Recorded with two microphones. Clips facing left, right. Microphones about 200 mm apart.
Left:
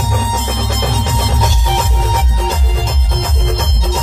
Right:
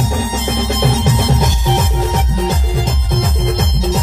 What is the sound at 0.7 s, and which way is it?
Music, 15° right (ahead or behind).